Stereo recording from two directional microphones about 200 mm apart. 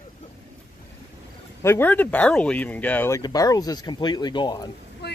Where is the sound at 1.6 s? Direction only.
10° left (ahead or behind).